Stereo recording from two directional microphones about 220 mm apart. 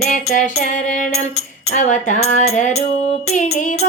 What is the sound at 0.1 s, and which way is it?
Music, 35° left (ahead or behind).